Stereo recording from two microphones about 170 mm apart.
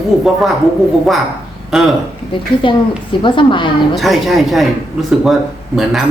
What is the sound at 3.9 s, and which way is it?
Speech, centre (ahead or behind).